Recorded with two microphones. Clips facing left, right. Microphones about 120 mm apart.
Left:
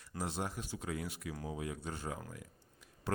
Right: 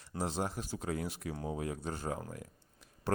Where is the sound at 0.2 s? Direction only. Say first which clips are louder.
Right 4 dB; 30° right (ahead or behind).